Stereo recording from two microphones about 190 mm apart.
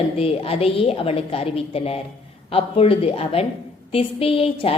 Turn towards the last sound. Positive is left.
turn(degrees=30)  # may be behind; listen again after turning